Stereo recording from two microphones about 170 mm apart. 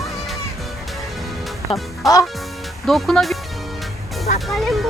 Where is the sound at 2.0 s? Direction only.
Centre (ahead or behind).